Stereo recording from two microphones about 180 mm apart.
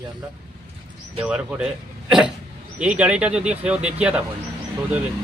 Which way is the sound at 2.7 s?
5° right (ahead or behind).